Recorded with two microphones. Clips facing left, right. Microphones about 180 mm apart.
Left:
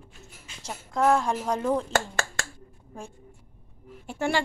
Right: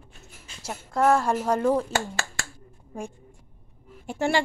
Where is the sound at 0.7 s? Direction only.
5° right (ahead or behind).